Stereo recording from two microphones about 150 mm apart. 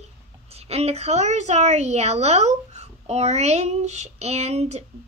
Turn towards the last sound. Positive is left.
turn(degrees=-45)  # may be behind; listen again after turning